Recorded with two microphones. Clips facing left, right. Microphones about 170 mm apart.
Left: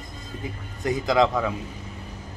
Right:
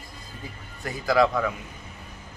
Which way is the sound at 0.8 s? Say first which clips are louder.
Left 1 dB; 20° left (ahead or behind).